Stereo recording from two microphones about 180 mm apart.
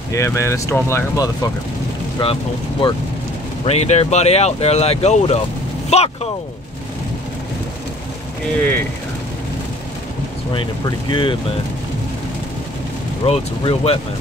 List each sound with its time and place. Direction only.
0.1 s speech: 15° left (ahead or behind); by 6.1 s 35° left (ahead or behind)
10.5 s speech: 25° left (ahead or behind)
13.2 s speech: 35° left (ahead or behind)